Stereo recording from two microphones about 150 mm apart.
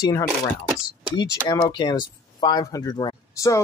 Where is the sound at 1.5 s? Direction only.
30° left (ahead or behind).